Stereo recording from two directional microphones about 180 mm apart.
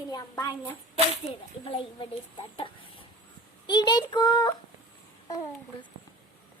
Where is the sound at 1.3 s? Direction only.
30° left (ahead or behind).